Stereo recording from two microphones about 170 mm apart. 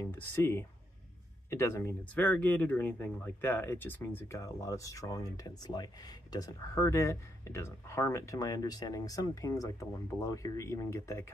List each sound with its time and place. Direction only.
0.0 s speech: 10° left (ahead or behind)